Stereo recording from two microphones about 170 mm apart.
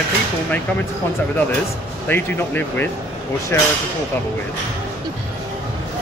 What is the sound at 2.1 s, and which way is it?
Speech, 10° left (ahead or behind).